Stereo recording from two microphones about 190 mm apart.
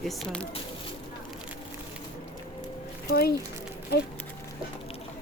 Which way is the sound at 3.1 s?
55° left (ahead or behind).